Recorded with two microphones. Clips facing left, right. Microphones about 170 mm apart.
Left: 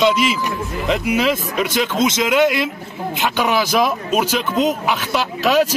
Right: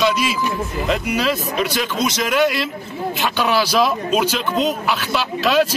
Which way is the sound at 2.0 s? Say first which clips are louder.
Left 3 dB; 20° left (ahead or behind).